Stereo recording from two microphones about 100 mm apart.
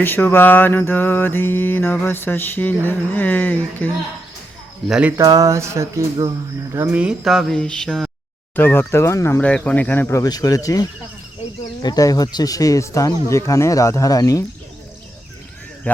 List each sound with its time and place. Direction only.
0.0 s mantra: 20° left (ahead or behind)
4.9 s speech: 10° right (ahead or behind)
5.1 s a sound: 35° right (ahead or behind)
6.9 s speech: 10° right (ahead or behind)
7.3 s mantra: 5° left (ahead or behind)
8.5 s mantra: 20° left (ahead or behind)
9.4 s speech: 10° left (ahead or behind)
10.2 s speech: 40° left (ahead or behind)